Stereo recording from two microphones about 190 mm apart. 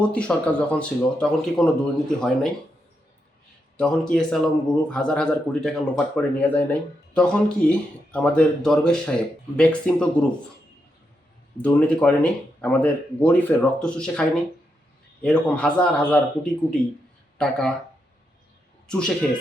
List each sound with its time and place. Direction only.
0.0 s speech: 5° left (ahead or behind)
3.8 s speech: 5° left (ahead or behind)
11.5 s speech: 5° left (ahead or behind)
18.9 s speech: 5° left (ahead or behind)